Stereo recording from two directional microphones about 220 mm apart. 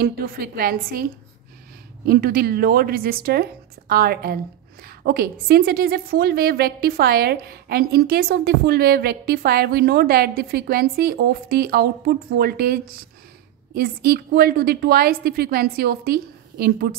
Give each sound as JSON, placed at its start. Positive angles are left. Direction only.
{"t": 0.0, "sound": "a woman's voice", "side_deg": -45}
{"t": 2.0, "sound": "a woman's voice", "side_deg": -45}